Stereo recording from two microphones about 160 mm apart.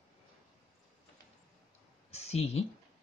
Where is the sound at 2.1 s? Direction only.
40° left (ahead or behind).